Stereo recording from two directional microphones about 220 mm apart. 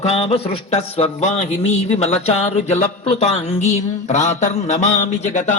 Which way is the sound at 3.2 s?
30° left (ahead or behind).